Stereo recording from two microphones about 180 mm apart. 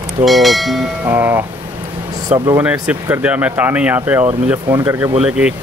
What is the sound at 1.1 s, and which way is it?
Speech, 10° right (ahead or behind).